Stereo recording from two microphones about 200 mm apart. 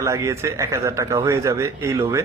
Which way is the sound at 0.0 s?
15° right (ahead or behind).